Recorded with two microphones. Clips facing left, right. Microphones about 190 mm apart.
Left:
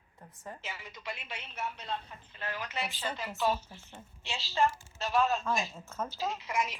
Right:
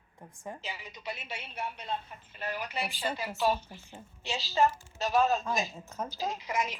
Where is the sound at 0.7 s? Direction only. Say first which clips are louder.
Right 2 dB; 20° right (ahead or behind).